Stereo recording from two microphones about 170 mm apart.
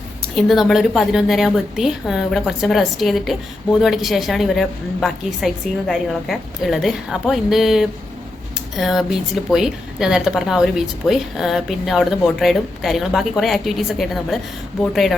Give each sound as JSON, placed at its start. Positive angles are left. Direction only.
{"t": 0.3, "sound": "a woman's voice", "side_deg": 0}